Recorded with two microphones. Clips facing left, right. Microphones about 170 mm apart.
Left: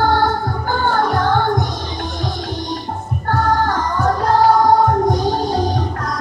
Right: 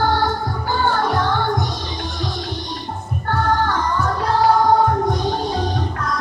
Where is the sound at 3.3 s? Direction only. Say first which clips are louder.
Left 2 dB; 40° left (ahead or behind).